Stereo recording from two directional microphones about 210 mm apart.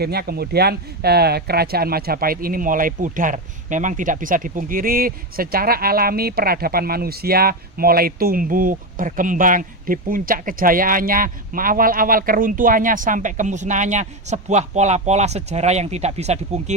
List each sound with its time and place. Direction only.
0.0 s speech: 50° right (ahead or behind); by 16.7 s 30° right (ahead or behind)